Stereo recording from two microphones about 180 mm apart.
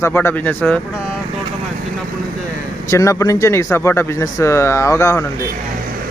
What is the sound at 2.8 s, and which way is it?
Speech, 15° left (ahead or behind).